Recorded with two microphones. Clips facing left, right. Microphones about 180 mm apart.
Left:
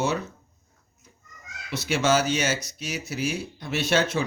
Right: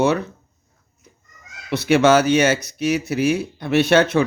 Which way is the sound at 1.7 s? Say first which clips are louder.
Right 8 dB; 60° right (ahead or behind).